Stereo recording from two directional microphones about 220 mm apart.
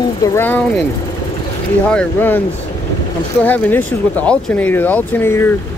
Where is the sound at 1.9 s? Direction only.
10° left (ahead or behind).